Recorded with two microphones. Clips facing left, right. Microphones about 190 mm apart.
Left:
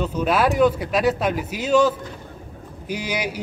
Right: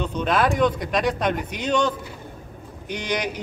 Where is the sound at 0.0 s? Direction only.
5° left (ahead or behind).